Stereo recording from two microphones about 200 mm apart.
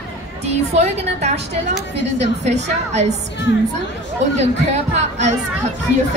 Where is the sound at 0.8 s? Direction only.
35° right (ahead or behind).